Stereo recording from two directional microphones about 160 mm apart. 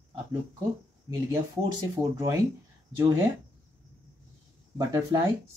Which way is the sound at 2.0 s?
20° right (ahead or behind).